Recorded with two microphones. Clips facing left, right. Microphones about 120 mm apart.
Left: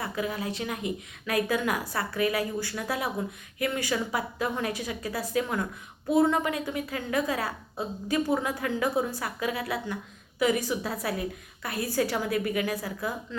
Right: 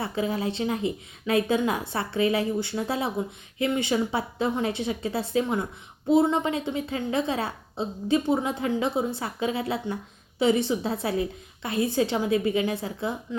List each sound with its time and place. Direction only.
0.0 s a woman's voice: 30° right (ahead or behind)